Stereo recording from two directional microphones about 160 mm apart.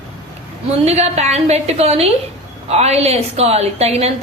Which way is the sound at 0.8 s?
40° right (ahead or behind).